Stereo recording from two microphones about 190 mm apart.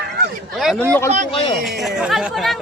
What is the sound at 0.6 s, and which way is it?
Speech, centre (ahead or behind).